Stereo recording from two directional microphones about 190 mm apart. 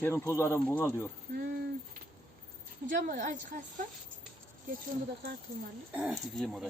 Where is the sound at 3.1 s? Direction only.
40° right (ahead or behind).